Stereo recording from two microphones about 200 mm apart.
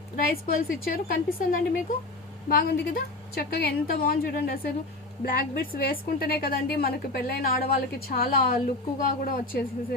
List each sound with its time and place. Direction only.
0.2 s a woman's voice: 45° left (ahead or behind)